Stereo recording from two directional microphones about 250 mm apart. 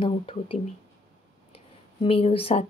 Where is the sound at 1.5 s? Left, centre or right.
Left.